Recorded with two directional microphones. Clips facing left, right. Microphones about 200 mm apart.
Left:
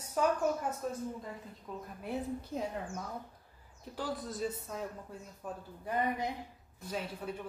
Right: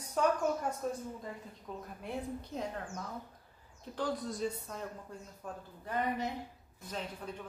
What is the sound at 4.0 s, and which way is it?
A man's voice, 5° left (ahead or behind).